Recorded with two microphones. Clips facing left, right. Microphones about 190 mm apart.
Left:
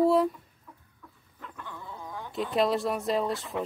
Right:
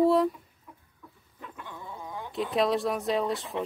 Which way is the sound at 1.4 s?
15° right (ahead or behind).